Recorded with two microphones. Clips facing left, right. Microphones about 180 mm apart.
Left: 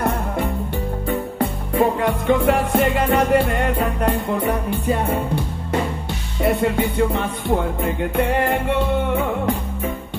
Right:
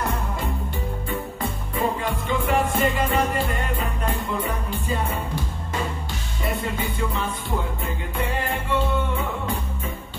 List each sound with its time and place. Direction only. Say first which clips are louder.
1.7 s music: left 7 dB; 65° left (ahead or behind)